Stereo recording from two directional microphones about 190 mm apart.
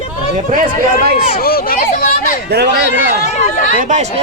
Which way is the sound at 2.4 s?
60° right (ahead or behind).